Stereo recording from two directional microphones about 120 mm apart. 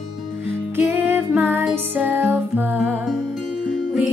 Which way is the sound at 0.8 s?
15° right (ahead or behind).